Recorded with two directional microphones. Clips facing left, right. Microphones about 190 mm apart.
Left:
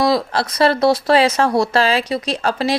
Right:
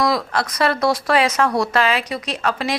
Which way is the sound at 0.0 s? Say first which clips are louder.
Left 3 dB; 30° left (ahead or behind).